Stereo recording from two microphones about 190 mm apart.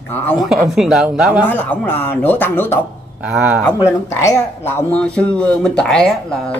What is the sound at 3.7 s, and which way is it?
Speech, 15° left (ahead or behind).